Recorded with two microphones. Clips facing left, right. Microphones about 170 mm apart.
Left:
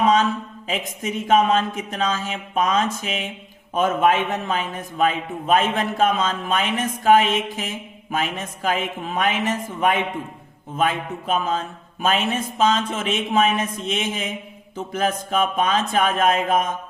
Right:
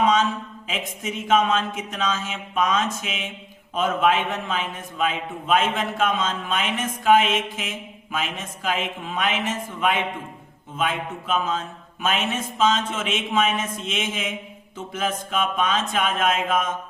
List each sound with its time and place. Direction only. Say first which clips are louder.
0.0 s a sound: left 2 dB; 35° left (ahead or behind)
0.7 s a man's voice: left 4 dB; 40° left (ahead or behind)
10.8 s a man's voice: left 3 dB; 35° left (ahead or behind)